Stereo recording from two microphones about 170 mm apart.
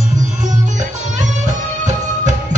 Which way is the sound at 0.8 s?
45° right (ahead or behind).